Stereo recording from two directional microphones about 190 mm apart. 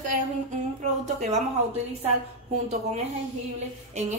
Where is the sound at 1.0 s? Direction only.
35° right (ahead or behind).